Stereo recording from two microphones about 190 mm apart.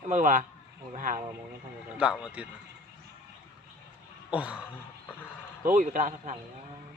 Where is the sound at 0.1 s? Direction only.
40° right (ahead or behind).